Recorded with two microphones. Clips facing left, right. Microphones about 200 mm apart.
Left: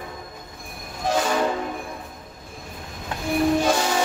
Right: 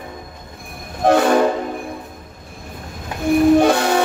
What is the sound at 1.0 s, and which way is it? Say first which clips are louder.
Train: right 9 dB; 60° right (ahead or behind).